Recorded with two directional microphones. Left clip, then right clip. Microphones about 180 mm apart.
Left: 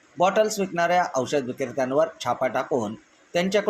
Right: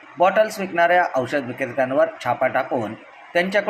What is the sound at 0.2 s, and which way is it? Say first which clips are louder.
Speech: right 3 dB; 35° left (ahead or behind).